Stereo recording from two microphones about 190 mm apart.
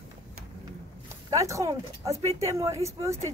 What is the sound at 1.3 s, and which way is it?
Speech, 15° right (ahead or behind).